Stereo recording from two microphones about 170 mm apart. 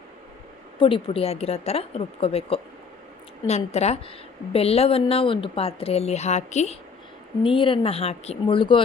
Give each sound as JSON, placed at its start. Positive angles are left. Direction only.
{"t": 0.8, "sound": "speech", "side_deg": 30}
{"t": 7.4, "sound": "speech", "side_deg": 30}